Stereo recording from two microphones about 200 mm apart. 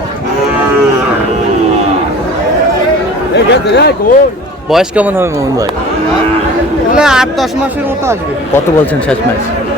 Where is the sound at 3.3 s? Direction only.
55° left (ahead or behind).